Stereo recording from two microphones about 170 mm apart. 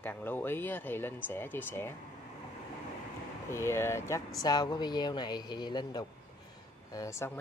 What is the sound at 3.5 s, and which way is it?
Speech, 15° left (ahead or behind).